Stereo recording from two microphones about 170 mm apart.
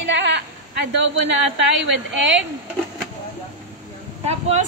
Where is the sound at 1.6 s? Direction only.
90° right.